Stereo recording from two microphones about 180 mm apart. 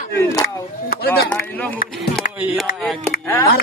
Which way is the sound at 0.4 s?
60° left (ahead or behind).